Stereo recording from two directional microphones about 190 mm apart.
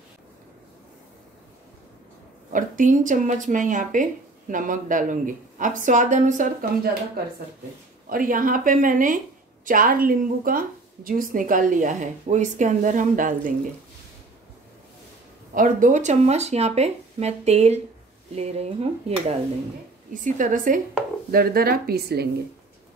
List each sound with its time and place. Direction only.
2.5 s speech: 45° right (ahead or behind)
8.1 s speech: 45° right (ahead or behind)
15.5 s speech: 45° right (ahead or behind)